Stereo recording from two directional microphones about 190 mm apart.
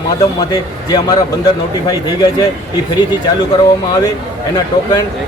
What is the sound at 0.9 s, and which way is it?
Speech, 20° left (ahead or behind).